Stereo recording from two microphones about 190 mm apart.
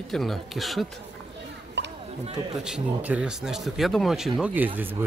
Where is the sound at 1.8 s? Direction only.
65° right (ahead or behind).